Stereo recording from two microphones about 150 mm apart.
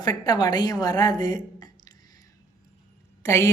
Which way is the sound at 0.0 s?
25° left (ahead or behind).